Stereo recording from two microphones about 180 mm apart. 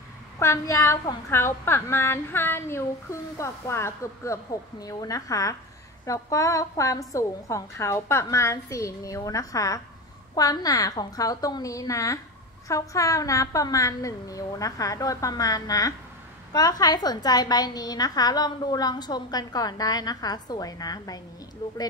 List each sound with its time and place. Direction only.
0.4 s a woman's voice: 15° left (ahead or behind)